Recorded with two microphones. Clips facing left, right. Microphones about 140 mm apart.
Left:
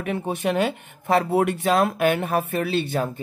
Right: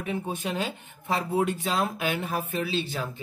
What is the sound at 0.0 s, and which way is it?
Speech, 65° left (ahead or behind).